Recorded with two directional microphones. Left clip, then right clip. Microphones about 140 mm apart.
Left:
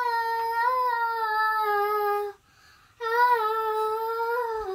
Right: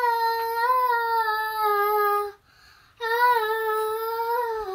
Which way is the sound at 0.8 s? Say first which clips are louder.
Right 3 dB; 10° left (ahead or behind).